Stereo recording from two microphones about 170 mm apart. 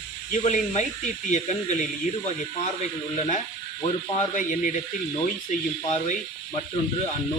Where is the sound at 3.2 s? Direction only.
45° left (ahead or behind).